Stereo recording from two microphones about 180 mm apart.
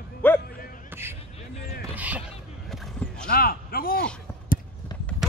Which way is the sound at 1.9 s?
10° right (ahead or behind).